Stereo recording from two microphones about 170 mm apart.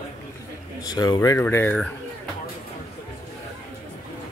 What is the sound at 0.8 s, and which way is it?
Speech, 20° left (ahead or behind).